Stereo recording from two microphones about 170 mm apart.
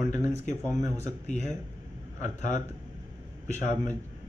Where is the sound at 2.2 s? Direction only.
45° left (ahead or behind).